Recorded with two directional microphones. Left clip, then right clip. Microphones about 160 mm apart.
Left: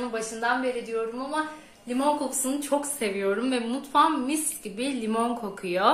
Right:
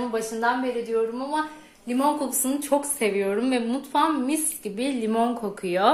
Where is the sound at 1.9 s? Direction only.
40° right (ahead or behind).